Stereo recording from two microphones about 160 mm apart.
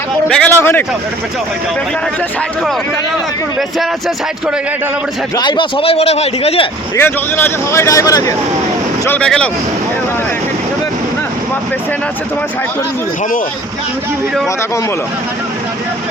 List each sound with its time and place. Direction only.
0.3 s speech: 10° left (ahead or behind)
5.4 s a man's voice: 30° left (ahead or behind)
6.9 s speech: 15° left (ahead or behind)
9.0 s speech: 10° left (ahead or behind)